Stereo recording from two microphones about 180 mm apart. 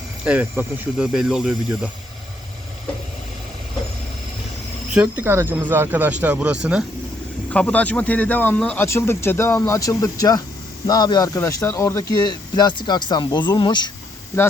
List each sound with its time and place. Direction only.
0.3 s speech: 10° right (ahead or behind)
4.9 s speech: 10° right (ahead or behind)
7.5 s speech: 5° left (ahead or behind)